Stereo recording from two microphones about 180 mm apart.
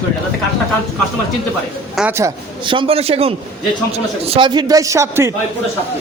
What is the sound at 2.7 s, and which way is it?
Speech, 30° right (ahead or behind).